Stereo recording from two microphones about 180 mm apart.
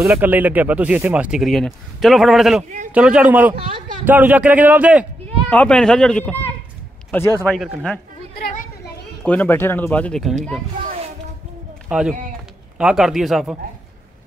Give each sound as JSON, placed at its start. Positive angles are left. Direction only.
{"t": 0.0, "sound": "a man's voice", "side_deg": -5}
{"t": 5.5, "sound": "speech", "side_deg": 5}
{"t": 7.4, "sound": "speech", "side_deg": 0}
{"t": 8.4, "sound": "children playing", "side_deg": 50}
{"t": 9.2, "sound": "speech", "side_deg": 10}
{"t": 11.9, "sound": "speech", "side_deg": -5}